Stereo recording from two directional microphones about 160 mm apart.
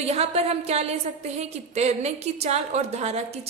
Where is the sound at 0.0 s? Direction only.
40° right (ahead or behind).